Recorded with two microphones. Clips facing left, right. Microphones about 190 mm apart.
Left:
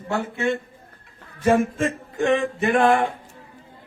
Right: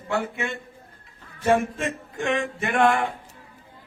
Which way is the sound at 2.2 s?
35° left (ahead or behind).